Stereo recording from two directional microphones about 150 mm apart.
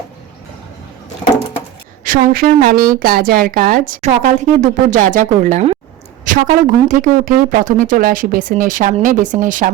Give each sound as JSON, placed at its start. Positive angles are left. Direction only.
{"t": 2.0, "sound": "a woman's voice", "side_deg": -65}
{"t": 6.3, "sound": "a sound", "side_deg": -60}
{"t": 6.8, "sound": "a woman's voice", "side_deg": -60}